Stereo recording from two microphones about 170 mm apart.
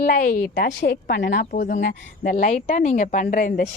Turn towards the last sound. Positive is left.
turn(degrees=50)  # may be behind; listen again after turning